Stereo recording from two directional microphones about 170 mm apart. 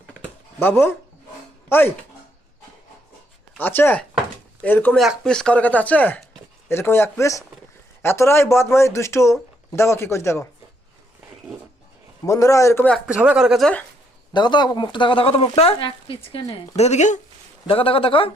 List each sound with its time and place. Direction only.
0.2 s a sound: 15° left (ahead or behind)
1.7 s speech: 15° left (ahead or behind)
3.6 s speech: 10° left (ahead or behind)
12.2 s a man's voice: 20° left (ahead or behind)
13.1 s speech: 5° right (ahead or behind)
14.3 s speech: 25° left (ahead or behind); by 17.2 s 45° left (ahead or behind)
17.7 s speech: 35° left (ahead or behind)